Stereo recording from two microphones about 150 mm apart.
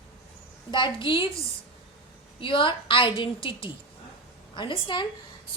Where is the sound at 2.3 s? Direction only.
35° left (ahead or behind).